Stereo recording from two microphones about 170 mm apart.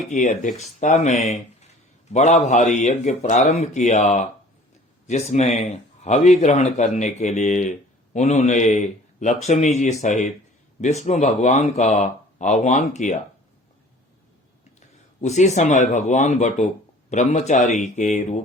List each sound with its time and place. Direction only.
0.1 s speech: 50° left (ahead or behind)
14.8 s speech: 45° left (ahead or behind)